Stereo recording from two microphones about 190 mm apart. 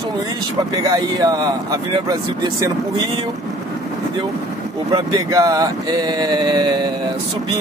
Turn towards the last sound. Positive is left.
turn(degrees=-20)  # may be behind; listen again after turning